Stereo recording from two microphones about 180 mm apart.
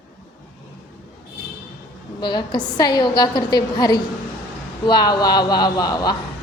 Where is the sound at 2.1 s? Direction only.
25° left (ahead or behind).